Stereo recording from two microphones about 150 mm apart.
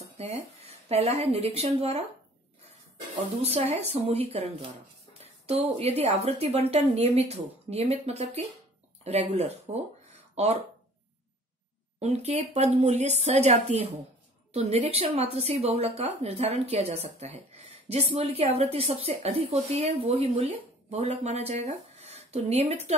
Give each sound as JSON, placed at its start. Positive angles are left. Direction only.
{"t": 0.0, "sound": "a woman's voice", "side_deg": -45}
{"t": 3.4, "sound": "a woman's voice", "side_deg": -45}
{"t": 12.0, "sound": "a woman's voice", "side_deg": -45}